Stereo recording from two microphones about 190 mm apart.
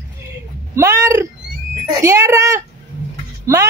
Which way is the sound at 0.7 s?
15° right (ahead or behind).